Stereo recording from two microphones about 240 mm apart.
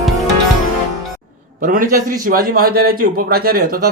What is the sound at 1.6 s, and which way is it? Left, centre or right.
Speech, right.